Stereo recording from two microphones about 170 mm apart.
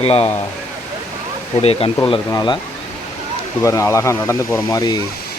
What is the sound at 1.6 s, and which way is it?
Speech, 35° left (ahead or behind).